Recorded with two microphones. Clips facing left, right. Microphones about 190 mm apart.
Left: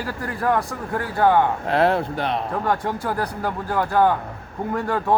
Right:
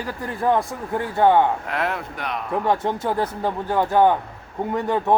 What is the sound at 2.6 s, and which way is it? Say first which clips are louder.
Speech: right 2 dB; 20° right (ahead or behind).